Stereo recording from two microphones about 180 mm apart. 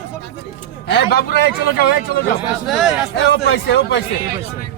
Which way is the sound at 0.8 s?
65° left (ahead or behind).